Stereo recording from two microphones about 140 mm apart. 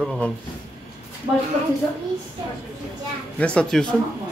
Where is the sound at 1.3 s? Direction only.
30° right (ahead or behind).